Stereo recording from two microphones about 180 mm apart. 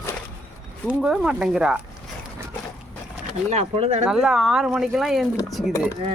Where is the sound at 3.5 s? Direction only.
35° right (ahead or behind).